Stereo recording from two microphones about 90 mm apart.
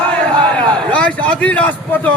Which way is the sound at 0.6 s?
15° left (ahead or behind).